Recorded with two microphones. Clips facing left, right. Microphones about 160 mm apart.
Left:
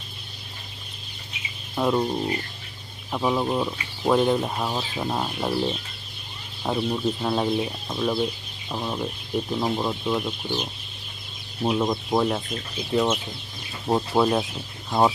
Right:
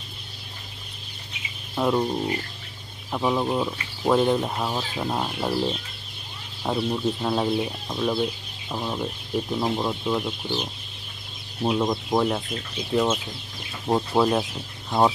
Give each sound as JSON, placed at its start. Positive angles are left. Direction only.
{"t": 1.8, "sound": "speech", "side_deg": 0}
{"t": 13.8, "sound": "speech", "side_deg": 0}